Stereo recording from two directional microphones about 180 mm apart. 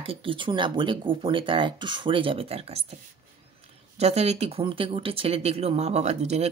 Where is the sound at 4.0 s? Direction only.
35° right (ahead or behind).